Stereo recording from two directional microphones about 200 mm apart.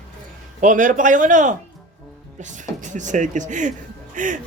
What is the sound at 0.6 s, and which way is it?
A man's voice, 40° right (ahead or behind).